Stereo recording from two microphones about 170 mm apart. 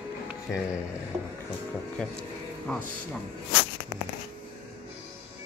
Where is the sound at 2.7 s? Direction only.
5° left (ahead or behind).